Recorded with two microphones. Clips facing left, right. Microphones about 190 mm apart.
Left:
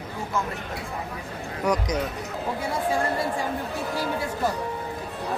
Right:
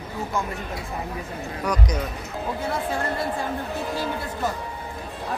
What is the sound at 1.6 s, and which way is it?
Speech, 20° left (ahead or behind).